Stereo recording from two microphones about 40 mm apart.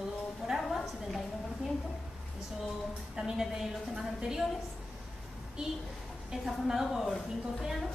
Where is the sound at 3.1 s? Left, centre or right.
Centre.